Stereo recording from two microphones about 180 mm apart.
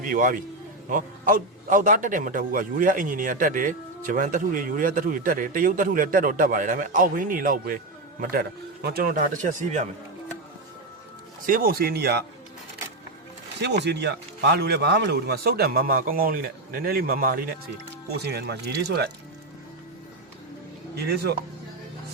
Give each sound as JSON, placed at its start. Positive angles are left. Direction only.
{"t": 0.0, "sound": "a man's voice", "side_deg": -50}
{"t": 11.4, "sound": "speech", "side_deg": -50}
{"t": 13.8, "sound": "speech", "side_deg": -70}
{"t": 18.2, "sound": "speech", "side_deg": -65}
{"t": 20.9, "sound": "speech", "side_deg": -65}